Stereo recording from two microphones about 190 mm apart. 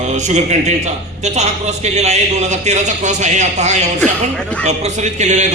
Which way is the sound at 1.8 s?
35° right (ahead or behind).